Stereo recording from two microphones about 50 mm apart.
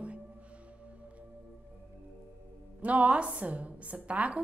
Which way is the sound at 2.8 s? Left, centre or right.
Right.